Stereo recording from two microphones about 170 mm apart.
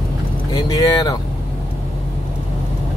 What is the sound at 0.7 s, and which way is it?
Speech, 20° left (ahead or behind).